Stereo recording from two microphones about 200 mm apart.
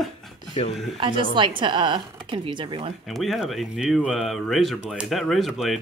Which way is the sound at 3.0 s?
Centre (ahead or behind).